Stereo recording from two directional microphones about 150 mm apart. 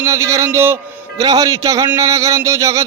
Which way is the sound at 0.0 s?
20° right (ahead or behind).